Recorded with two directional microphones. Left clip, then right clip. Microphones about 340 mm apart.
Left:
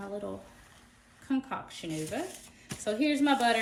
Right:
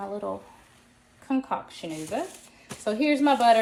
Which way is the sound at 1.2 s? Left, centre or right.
Centre.